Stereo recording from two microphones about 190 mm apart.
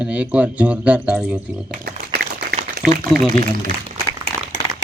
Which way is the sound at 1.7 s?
60° right (ahead or behind).